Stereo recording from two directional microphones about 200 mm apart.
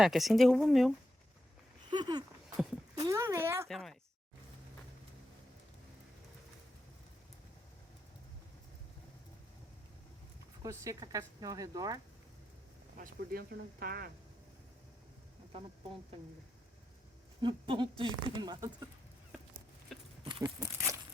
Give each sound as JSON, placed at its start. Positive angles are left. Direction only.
{"t": 0.0, "sound": "speech", "side_deg": 0}
{"t": 1.9, "sound": "a sound", "side_deg": -20}
{"t": 2.9, "sound": "speech", "side_deg": -15}
{"t": 3.7, "sound": "speech", "side_deg": 0}
{"t": 10.6, "sound": "speech", "side_deg": -15}
{"t": 13.0, "sound": "speech", "side_deg": -45}
{"t": 17.4, "sound": "speech", "side_deg": -25}
{"t": 20.2, "sound": "speech", "side_deg": -20}